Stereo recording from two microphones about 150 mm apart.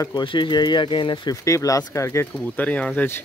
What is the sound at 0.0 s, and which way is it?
Speech, 30° left (ahead or behind).